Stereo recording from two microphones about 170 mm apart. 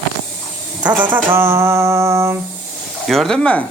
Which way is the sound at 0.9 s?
10° right (ahead or behind).